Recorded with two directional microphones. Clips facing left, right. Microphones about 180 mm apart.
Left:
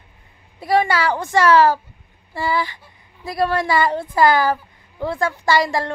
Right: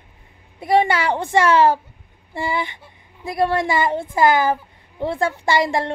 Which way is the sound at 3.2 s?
25° right (ahead or behind).